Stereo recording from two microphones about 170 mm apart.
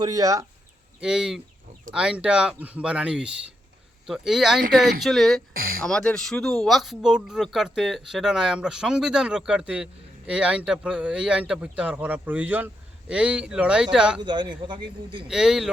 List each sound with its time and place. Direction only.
0.0 s a man's voice: 20° right (ahead or behind)
1.0 s speech: 5° right (ahead or behind)
5.5 s speech: 60° right (ahead or behind)
5.8 s speech: 5° left (ahead or behind)
14.2 s a man's voice: 25° right (ahead or behind)
15.3 s speech: 5° right (ahead or behind)